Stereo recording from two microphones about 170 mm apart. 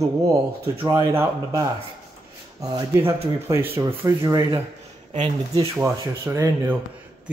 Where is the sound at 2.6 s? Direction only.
20° right (ahead or behind).